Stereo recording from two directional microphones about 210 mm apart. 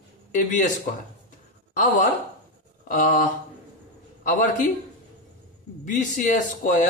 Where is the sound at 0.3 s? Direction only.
35° left (ahead or behind).